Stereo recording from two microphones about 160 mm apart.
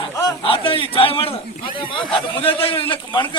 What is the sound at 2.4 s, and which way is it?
Speech, 35° left (ahead or behind).